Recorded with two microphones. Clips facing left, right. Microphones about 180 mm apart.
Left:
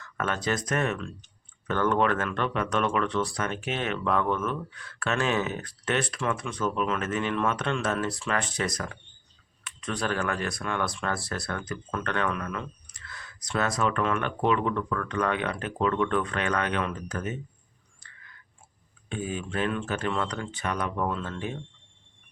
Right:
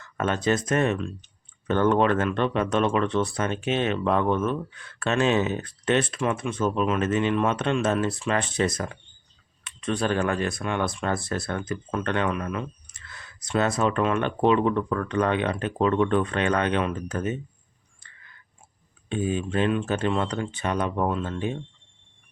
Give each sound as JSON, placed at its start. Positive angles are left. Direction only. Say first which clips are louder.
{"t": 0.0, "sound": "speech", "louder": "right 5 dB", "side_deg": -25}
{"t": 19.0, "sound": "speech", "louder": "right 6 dB", "side_deg": -25}